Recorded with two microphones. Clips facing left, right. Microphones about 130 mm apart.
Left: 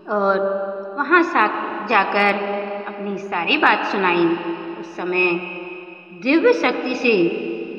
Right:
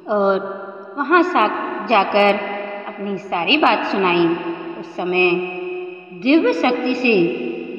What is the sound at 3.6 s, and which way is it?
Speech, 20° right (ahead or behind).